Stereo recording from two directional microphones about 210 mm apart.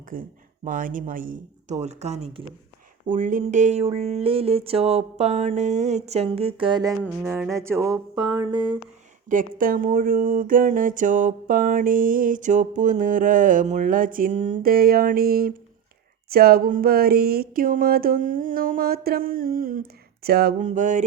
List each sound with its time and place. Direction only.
0.1 s speech: 40° right (ahead or behind)
3.1 s a sound: 40° right (ahead or behind); by 6.9 s 20° right (ahead or behind)
7.3 s music: 10° right (ahead or behind)
9.3 s speech: 40° right (ahead or behind)
16.3 s a sound: 45° right (ahead or behind)
20.2 s speech: 45° right (ahead or behind)